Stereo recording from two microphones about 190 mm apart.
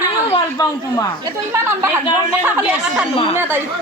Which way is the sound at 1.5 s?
15° right (ahead or behind).